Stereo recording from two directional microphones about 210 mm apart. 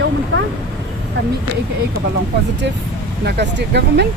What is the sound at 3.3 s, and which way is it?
Speech, 50° right (ahead or behind).